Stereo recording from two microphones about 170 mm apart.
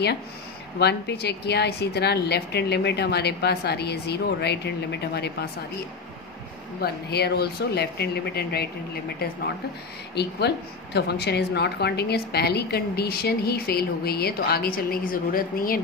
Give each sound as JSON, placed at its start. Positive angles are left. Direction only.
{"t": 0.7, "sound": "a woman's voice", "side_deg": 80}
{"t": 6.8, "sound": "a woman's voice", "side_deg": 70}
{"t": 10.1, "sound": "a woman's voice", "side_deg": 75}